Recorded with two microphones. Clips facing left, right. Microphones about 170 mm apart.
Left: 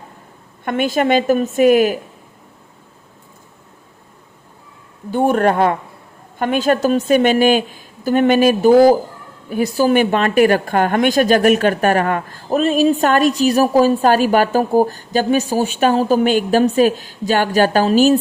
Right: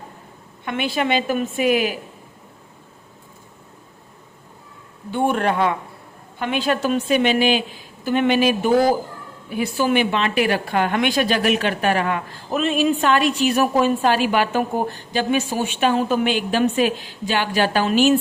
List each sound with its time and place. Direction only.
0.6 s a woman's voice: 45° left (ahead or behind)
5.1 s a woman's voice: 40° left (ahead or behind)